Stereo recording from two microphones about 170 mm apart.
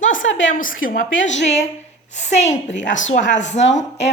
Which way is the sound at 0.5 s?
55° left (ahead or behind).